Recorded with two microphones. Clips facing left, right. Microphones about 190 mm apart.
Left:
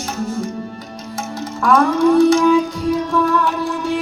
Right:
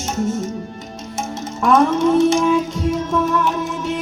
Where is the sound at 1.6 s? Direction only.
25° right (ahead or behind).